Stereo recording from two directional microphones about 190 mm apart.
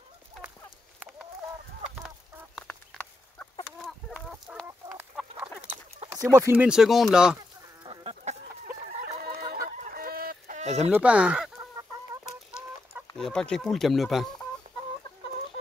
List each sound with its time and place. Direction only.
2.0 s chicken: 5° left (ahead or behind)
4.6 s chicken: 10° right (ahead or behind)
6.0 s speech: 15° right (ahead or behind)
7.3 s chicken: 25° right (ahead or behind)
8.8 s fowl: 50° right (ahead or behind)
10.9 s speech: 5° right (ahead or behind)
13.2 s speech: 5° left (ahead or behind)